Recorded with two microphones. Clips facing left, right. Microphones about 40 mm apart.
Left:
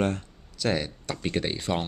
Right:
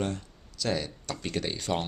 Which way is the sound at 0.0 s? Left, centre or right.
Left.